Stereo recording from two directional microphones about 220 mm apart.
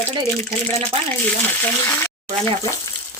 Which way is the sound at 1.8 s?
10° left (ahead or behind).